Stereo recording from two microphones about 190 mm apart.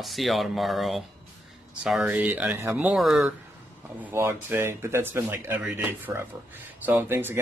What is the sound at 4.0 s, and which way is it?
Speech, 15° right (ahead or behind).